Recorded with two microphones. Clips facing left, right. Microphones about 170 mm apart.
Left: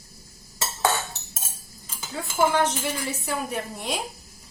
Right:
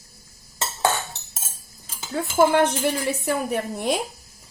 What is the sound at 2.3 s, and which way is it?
A woman's voice, 60° right (ahead or behind).